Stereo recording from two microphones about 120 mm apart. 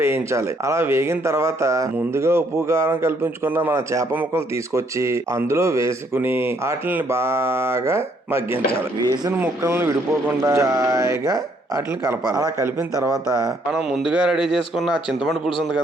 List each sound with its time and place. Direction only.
0.0 s a man's voice: 25° right (ahead or behind)
9.4 s a man's voice: 20° right (ahead or behind)
13.7 s speech: 5° right (ahead or behind)